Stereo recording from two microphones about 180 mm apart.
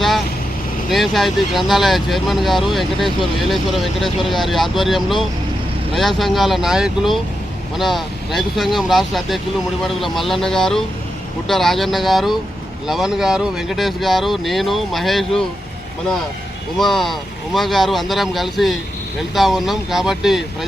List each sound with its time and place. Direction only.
0.9 s speech: centre (ahead or behind)
16.7 s speech: centre (ahead or behind)